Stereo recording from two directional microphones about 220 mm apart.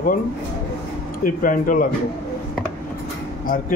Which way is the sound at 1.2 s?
40° left (ahead or behind).